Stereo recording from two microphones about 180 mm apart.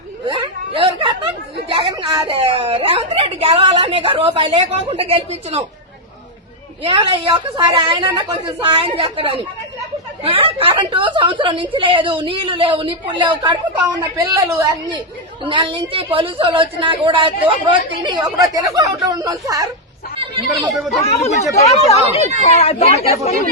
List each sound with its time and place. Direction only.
0.8 s chatter: 25° right (ahead or behind)
1.7 s a woman's voice: 30° right (ahead or behind)
6.8 s a woman's voice: 25° right (ahead or behind)
20.1 s a sound: 30° right (ahead or behind)
21.0 s speech: 35° left (ahead or behind)